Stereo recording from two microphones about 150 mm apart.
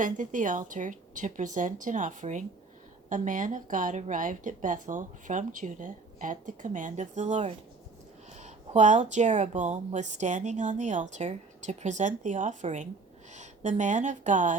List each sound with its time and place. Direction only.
0.0 s a woman's voice: 60° right (ahead or behind)